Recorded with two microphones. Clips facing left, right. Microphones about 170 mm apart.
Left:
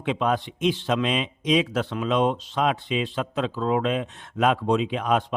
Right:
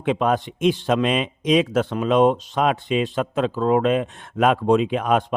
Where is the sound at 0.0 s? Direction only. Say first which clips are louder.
Right 4 dB; 50° right (ahead or behind).